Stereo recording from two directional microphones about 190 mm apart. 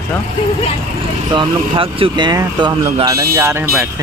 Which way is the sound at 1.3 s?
25° right (ahead or behind).